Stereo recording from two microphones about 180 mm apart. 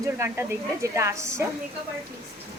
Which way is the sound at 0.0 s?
15° right (ahead or behind).